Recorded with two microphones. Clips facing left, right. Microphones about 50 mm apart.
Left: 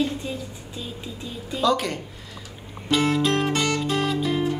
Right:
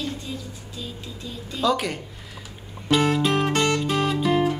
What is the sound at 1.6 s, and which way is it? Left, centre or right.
Speech, centre.